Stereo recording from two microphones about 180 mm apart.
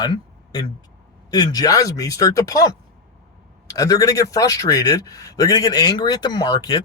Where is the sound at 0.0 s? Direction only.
25° left (ahead or behind).